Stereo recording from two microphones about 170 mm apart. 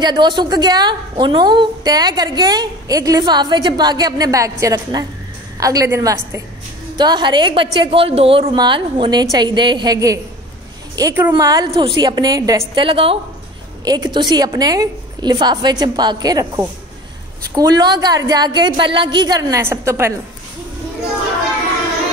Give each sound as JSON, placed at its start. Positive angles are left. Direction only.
{"t": 0.0, "sound": "a woman's voice", "side_deg": -25}